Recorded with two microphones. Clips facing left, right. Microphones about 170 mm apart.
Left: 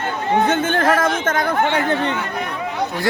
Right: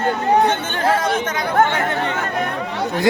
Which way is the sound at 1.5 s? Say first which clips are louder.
Right 6 dB; 50° right (ahead or behind).